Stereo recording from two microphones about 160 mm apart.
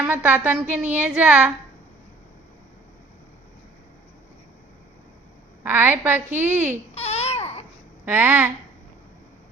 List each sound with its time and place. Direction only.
0.0 s a woman's voice: 10° right (ahead or behind)
5.6 s a woman's voice: 10° right (ahead or behind)
6.9 s babbling: 40° left (ahead or behind)
8.0 s a woman's voice: 10° right (ahead or behind)